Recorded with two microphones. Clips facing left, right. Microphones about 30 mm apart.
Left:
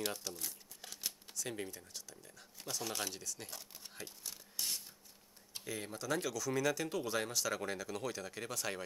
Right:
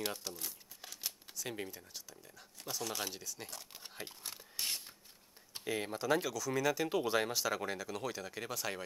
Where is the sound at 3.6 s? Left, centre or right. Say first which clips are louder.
Right 2 dB; right.